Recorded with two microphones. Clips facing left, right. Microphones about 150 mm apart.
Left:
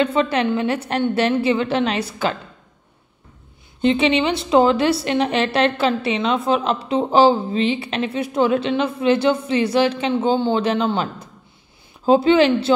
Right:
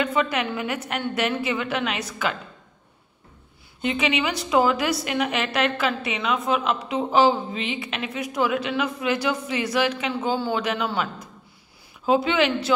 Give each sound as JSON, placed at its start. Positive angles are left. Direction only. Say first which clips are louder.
{"t": 0.0, "sound": "a woman's voice", "louder": "left 5 dB", "side_deg": 30}
{"t": 3.8, "sound": "a woman's voice", "louder": "left 7 dB", "side_deg": 30}
{"t": 12.1, "sound": "a woman's voice", "louder": "left 7 dB", "side_deg": 30}